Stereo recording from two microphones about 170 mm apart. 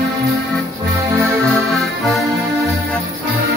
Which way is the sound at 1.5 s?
Centre (ahead or behind).